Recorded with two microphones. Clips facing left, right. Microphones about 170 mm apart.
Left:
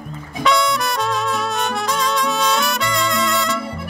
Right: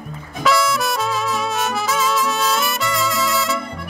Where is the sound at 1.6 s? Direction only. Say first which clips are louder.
Right 1 dB; 5° right (ahead or behind).